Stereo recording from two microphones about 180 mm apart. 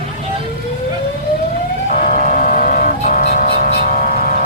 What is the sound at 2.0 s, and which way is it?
Vehicle, 45° left (ahead or behind).